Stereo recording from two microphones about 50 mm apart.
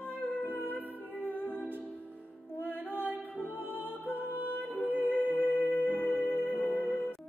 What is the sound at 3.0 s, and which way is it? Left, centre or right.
Music, right.